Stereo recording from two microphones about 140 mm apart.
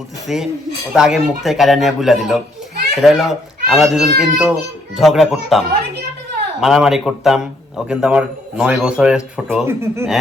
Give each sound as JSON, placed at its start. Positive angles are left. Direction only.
{"t": 0.3, "sound": "a man's voice", "side_deg": 0}
{"t": 9.6, "sound": "speech", "side_deg": -20}